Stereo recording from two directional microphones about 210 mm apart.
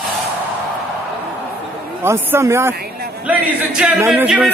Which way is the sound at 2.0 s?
10° right (ahead or behind).